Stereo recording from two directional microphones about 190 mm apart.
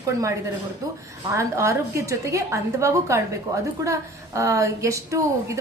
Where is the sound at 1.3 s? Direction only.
15° right (ahead or behind).